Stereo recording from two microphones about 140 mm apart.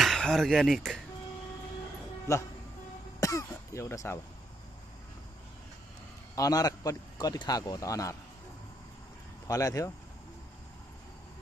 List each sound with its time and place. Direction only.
0.0 s speech: centre (ahead or behind)
3.2 s speech: 25° left (ahead or behind)
6.3 s a man's voice: 25° left (ahead or behind)
9.5 s a man's voice: 25° left (ahead or behind)